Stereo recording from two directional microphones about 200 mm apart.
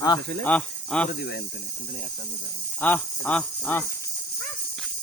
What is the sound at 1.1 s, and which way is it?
Cricket, 60° left (ahead or behind).